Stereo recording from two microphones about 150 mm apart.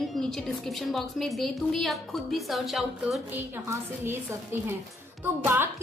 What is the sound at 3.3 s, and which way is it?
A woman's voice, 15° right (ahead or behind).